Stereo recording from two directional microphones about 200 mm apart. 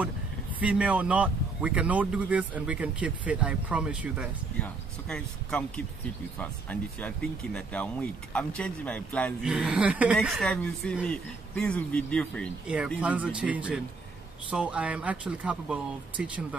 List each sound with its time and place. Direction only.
0.6 s speech: 5° right (ahead or behind)
4.6 s speech: 5° left (ahead or behind)
12.6 s speech: 5° right (ahead or behind)